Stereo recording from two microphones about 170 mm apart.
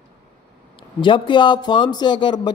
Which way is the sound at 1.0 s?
30° left (ahead or behind).